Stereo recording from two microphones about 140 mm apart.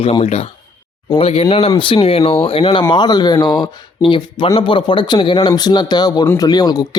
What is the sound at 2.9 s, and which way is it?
Speech, 30° left (ahead or behind).